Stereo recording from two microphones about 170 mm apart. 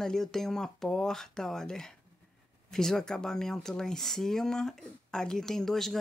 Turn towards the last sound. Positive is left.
turn(degrees=0)  # may be behind; listen again after turning